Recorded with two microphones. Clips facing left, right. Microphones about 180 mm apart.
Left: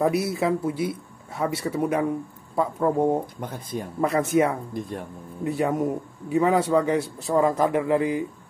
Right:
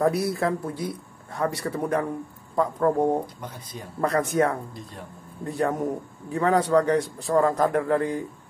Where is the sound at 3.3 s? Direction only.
50° left (ahead or behind).